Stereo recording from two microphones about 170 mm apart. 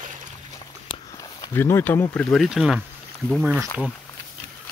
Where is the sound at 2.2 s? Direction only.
Centre (ahead or behind).